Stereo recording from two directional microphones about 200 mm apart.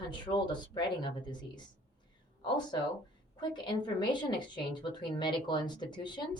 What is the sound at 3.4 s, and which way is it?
Speech, 20° left (ahead or behind).